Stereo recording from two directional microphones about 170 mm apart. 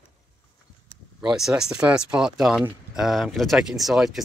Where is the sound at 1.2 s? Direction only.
5° right (ahead or behind).